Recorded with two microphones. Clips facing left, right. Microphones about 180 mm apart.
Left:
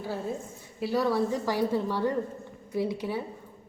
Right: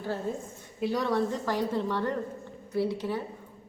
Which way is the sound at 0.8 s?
5° left (ahead or behind).